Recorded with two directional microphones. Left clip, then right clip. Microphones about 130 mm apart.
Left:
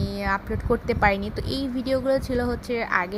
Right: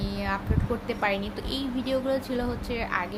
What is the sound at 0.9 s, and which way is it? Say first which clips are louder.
Speech: left 5 dB; 65° left (ahead or behind).